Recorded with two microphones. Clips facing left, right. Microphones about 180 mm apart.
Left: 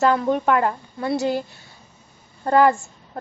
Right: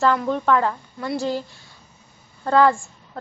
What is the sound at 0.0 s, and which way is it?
Speech, 15° left (ahead or behind).